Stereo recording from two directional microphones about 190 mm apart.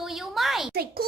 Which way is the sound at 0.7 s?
55° right (ahead or behind).